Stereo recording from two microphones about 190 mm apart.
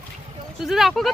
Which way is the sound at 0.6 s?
Centre (ahead or behind).